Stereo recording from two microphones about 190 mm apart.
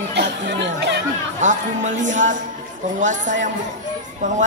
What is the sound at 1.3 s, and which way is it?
Speech, 40° right (ahead or behind).